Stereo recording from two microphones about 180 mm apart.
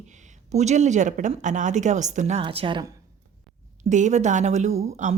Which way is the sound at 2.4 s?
30° right (ahead or behind).